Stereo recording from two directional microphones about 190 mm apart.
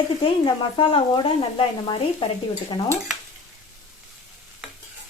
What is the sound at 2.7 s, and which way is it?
Speech, 20° left (ahead or behind).